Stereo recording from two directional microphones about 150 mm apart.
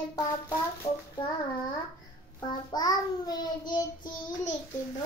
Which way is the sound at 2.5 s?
25° left (ahead or behind).